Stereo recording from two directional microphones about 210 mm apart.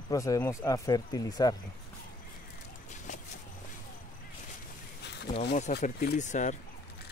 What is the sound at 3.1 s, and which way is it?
Vehicle, 35° left (ahead or behind).